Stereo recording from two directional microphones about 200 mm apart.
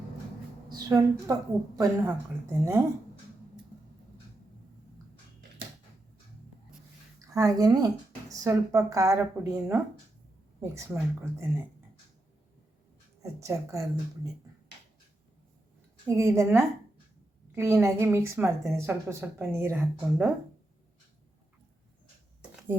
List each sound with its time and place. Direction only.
0.7 s a woman's voice: 20° right (ahead or behind)
7.3 s a woman's voice: 20° right (ahead or behind)
13.2 s a woman's voice: 15° right (ahead or behind)
16.0 s a woman's voice: 15° right (ahead or behind)